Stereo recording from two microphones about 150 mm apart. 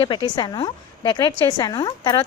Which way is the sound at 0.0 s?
35° left (ahead or behind).